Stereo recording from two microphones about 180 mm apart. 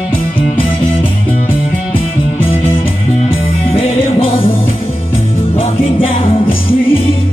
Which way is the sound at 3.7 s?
30° left (ahead or behind).